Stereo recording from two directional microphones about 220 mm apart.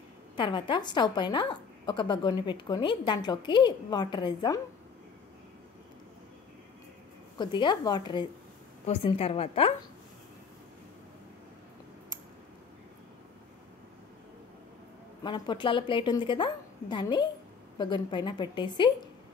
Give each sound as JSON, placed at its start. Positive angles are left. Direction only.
{"t": 0.4, "sound": "a woman's voice", "side_deg": 20}
{"t": 7.3, "sound": "a woman's voice", "side_deg": 20}
{"t": 15.2, "sound": "a woman's voice", "side_deg": 20}